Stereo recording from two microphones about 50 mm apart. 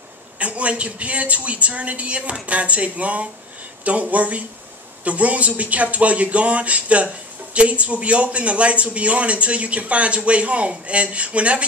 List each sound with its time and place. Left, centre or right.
0.4 s a man's voice: right